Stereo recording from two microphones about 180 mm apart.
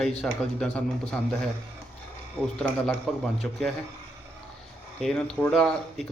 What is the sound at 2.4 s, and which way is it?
Speech, 5° left (ahead or behind).